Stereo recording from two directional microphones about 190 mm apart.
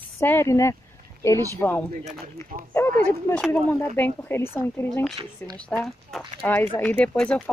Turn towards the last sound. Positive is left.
turn(degrees=5)  # may be behind; listen again after turning